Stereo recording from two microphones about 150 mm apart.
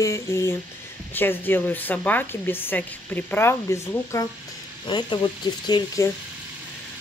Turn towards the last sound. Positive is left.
turn(degrees=30)  # may be behind; listen again after turning